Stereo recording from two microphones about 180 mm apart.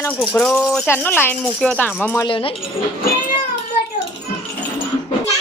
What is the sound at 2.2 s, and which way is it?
Speech, 30° left (ahead or behind).